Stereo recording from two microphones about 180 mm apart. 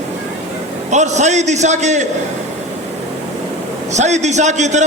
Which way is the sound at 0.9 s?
40° right (ahead or behind).